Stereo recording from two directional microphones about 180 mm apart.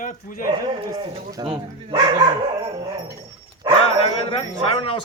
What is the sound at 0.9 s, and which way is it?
Speech, 25° right (ahead or behind).